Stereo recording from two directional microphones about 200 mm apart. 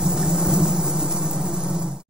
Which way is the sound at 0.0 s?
5° right (ahead or behind).